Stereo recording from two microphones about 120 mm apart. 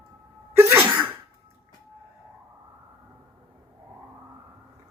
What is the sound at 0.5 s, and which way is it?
Sneeze, 20° right (ahead or behind).